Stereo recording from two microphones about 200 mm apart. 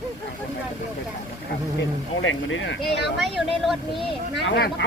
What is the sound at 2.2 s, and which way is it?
Speech, 75° left (ahead or behind).